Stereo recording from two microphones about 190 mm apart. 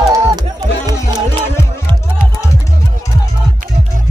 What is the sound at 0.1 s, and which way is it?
Music, 20° right (ahead or behind).